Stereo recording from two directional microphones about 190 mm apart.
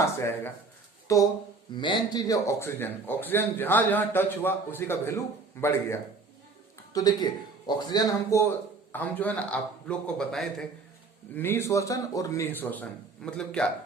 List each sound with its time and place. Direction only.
0.0 s a man's voice: 15° left (ahead or behind)